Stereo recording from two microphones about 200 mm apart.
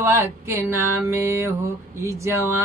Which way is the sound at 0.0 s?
15° right (ahead or behind).